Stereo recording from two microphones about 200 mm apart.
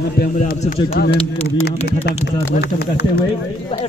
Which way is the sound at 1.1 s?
30° left (ahead or behind).